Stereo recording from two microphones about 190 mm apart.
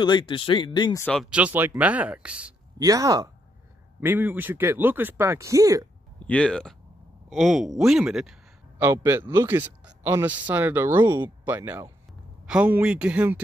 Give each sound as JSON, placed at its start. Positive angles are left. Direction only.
{"t": 0.0, "sound": "speech", "side_deg": 25}
{"t": 1.0, "sound": "speech", "side_deg": 5}
{"t": 1.3, "sound": "a man's voice", "side_deg": -10}
{"t": 2.8, "sound": "a man's voice", "side_deg": -20}
{"t": 6.1, "sound": "a man's voice", "side_deg": 5}